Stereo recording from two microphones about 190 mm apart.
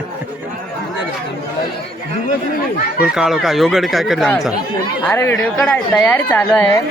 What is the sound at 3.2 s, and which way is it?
Speech, centre (ahead or behind).